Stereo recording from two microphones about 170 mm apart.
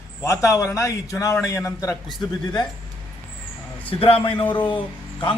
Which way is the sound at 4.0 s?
30° left (ahead or behind).